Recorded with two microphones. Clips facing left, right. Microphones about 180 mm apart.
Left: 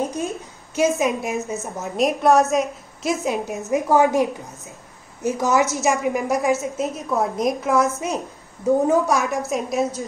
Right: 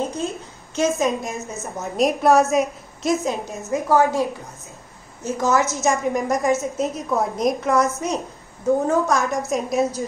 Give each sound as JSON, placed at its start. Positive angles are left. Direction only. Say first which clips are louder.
{"t": 0.0, "sound": "a sound", "louder": "even", "side_deg": 15}
{"t": 0.7, "sound": "a woman's voice", "louder": "left 1 dB", "side_deg": 10}
{"t": 3.3, "sound": "a woman's voice", "louder": "left 2 dB", "side_deg": 15}
{"t": 6.1, "sound": "a woman's voice", "louder": "even", "side_deg": 5}
{"t": 9.5, "sound": "a woman's voice", "louder": "right 1 dB", "side_deg": 0}